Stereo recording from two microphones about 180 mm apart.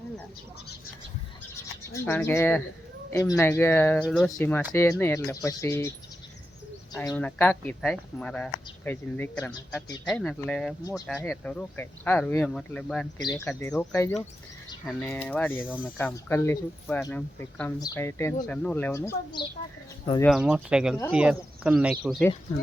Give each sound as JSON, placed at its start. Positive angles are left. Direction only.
{"t": 1.9, "sound": "speech", "side_deg": 15}
{"t": 4.7, "sound": "speech", "side_deg": 15}
{"t": 6.9, "sound": "speech", "side_deg": 20}
{"t": 7.2, "sound": "speech", "side_deg": 10}
{"t": 10.8, "sound": "speech", "side_deg": 20}
{"t": 11.3, "sound": "speech", "side_deg": 5}
{"t": 13.1, "sound": "speech", "side_deg": 20}
{"t": 13.5, "sound": "speech", "side_deg": 10}
{"t": 20.2, "sound": "speech", "side_deg": -5}